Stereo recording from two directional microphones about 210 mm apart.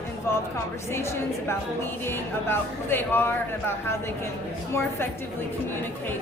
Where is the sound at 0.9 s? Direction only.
10° left (ahead or behind).